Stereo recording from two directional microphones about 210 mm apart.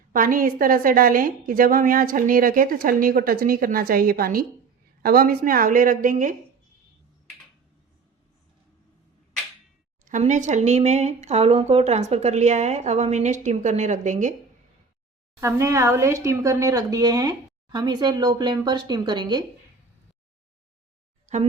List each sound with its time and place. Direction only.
0.1 s a woman's voice: 40° right (ahead or behind)
10.1 s speech: 35° right (ahead or behind)
15.4 s a woman's voice: 15° right (ahead or behind)